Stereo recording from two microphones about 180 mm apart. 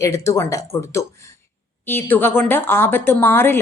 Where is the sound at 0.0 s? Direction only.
15° left (ahead or behind).